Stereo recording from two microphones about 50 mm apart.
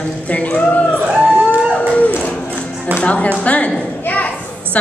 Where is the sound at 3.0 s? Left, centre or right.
Left.